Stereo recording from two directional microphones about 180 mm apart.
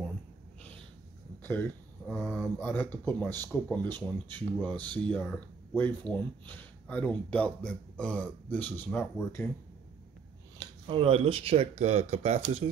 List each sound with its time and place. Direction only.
1.4 s a sound: 10° left (ahead or behind)
2.0 s speech: 5° left (ahead or behind)
10.6 s speech: 30° right (ahead or behind)